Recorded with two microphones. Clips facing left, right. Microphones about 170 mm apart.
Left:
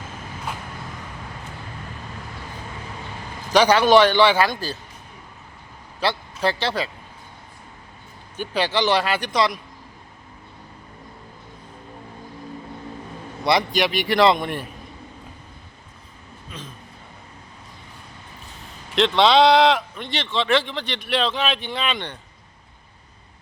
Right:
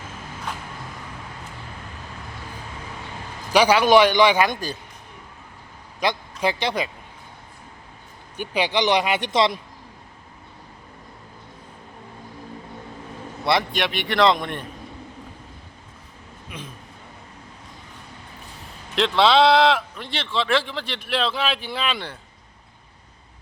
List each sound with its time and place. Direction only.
3.5 s a man's voice: 10° right (ahead or behind)
6.0 s speech: 15° right (ahead or behind)
8.4 s a man's voice: 15° right (ahead or behind)
13.4 s a man's voice: centre (ahead or behind)
16.5 s speech: 15° right (ahead or behind)
18.9 s a man's voice: centre (ahead or behind)